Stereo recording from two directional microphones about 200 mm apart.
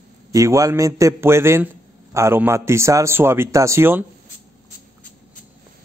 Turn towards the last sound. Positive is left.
turn(degrees=-10)  # may be behind; listen again after turning